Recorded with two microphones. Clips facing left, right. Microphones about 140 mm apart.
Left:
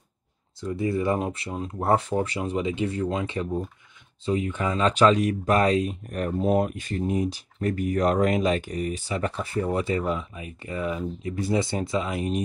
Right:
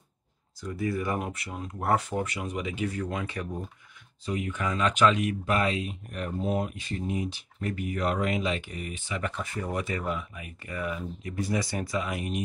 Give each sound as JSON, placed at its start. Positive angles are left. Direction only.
{"t": 0.6, "sound": "speech", "side_deg": 25}